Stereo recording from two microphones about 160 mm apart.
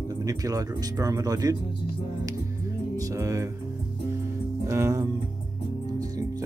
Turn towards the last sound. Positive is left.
turn(degrees=-20)  # may be behind; listen again after turning